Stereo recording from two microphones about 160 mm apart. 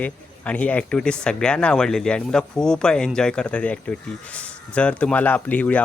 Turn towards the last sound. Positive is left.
turn(degrees=10)  # may be behind; listen again after turning